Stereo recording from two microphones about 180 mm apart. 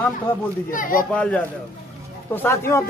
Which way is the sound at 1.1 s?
5° left (ahead or behind).